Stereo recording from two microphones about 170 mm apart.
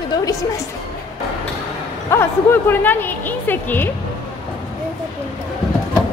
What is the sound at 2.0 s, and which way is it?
A woman's voice, 15° left (ahead or behind).